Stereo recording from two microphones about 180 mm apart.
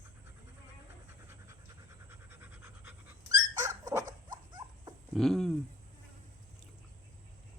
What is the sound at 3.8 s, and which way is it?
Dog, 20° right (ahead or behind).